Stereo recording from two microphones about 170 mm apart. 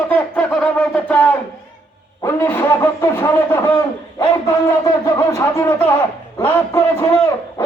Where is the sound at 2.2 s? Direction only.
15° left (ahead or behind).